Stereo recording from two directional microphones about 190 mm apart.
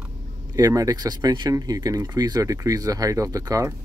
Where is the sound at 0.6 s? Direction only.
20° right (ahead or behind).